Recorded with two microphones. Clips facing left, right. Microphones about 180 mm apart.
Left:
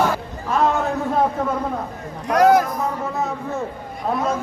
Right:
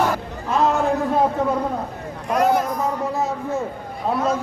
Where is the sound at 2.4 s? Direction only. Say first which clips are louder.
Left 4 dB; 75° left (ahead or behind).